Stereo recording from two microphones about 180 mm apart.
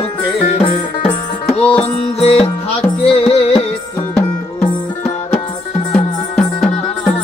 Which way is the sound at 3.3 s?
30° left (ahead or behind).